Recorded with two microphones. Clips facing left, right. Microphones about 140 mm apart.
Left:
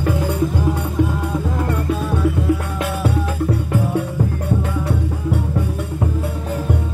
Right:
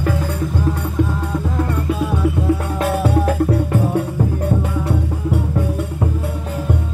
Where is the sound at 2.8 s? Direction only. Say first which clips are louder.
Right 4 dB; 45° right (ahead or behind).